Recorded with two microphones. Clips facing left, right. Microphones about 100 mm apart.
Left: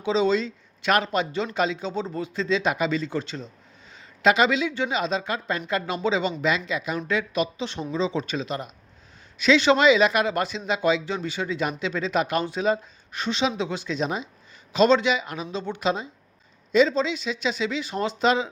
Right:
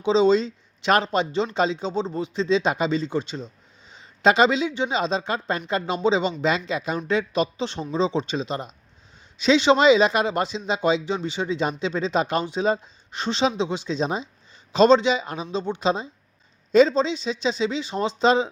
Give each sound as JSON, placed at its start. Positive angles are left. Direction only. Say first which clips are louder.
{"t": 0.0, "sound": "speech", "louder": "right 4 dB", "side_deg": -25}
{"t": 3.9, "sound": "speech", "louder": "right 2 dB", "side_deg": -30}